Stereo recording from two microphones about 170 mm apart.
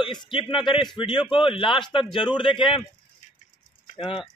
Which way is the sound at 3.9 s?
30° left (ahead or behind).